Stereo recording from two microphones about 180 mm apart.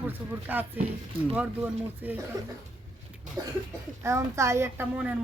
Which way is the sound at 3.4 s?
20° right (ahead or behind).